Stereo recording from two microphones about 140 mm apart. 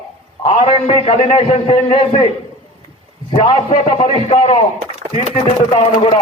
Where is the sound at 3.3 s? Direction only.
40° left (ahead or behind).